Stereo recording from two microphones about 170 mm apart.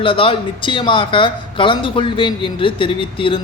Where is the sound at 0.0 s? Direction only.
30° left (ahead or behind).